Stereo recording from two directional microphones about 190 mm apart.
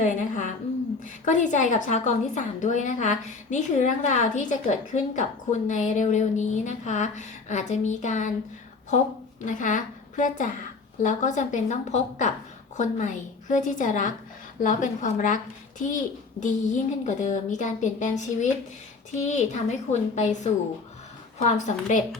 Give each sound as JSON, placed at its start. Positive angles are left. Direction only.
{"t": 0.0, "sound": "a woman's voice", "side_deg": 40}
{"t": 9.4, "sound": "a woman's voice", "side_deg": 45}
{"t": 16.4, "sound": "a woman's voice", "side_deg": 40}